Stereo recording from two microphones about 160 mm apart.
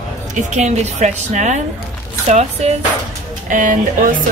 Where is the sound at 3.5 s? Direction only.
55° right (ahead or behind).